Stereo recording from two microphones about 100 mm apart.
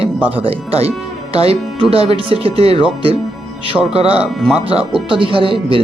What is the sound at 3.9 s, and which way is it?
Speech, 75° right (ahead or behind).